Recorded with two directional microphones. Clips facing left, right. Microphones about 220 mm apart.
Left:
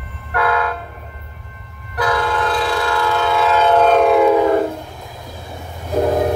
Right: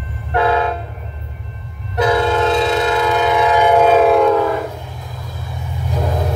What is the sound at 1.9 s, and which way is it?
Train, 25° right (ahead or behind).